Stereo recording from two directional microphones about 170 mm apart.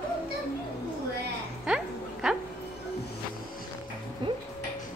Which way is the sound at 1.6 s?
5° right (ahead or behind).